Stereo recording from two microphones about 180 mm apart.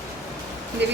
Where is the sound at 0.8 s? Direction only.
75° right (ahead or behind).